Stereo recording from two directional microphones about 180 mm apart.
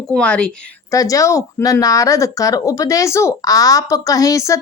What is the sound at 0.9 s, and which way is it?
Speech, 20° left (ahead or behind).